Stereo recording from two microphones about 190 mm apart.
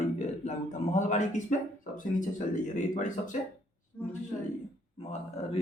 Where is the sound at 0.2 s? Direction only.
35° left (ahead or behind).